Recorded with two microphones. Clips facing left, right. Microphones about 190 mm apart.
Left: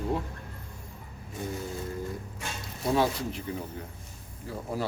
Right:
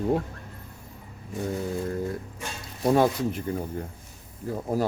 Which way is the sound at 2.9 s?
50° right (ahead or behind).